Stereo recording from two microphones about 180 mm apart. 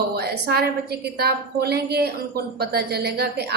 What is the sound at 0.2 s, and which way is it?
A woman's voice, 60° right (ahead or behind).